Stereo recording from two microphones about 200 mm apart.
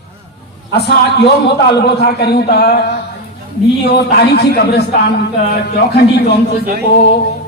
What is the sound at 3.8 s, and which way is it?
A man's voice, 55° left (ahead or behind).